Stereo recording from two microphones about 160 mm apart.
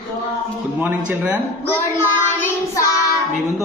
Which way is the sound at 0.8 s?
10° right (ahead or behind).